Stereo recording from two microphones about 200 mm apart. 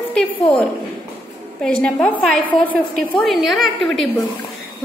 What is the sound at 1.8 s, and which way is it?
A woman's voice, 5° left (ahead or behind).